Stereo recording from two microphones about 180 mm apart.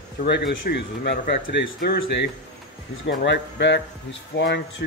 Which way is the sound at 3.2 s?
75° left (ahead or behind).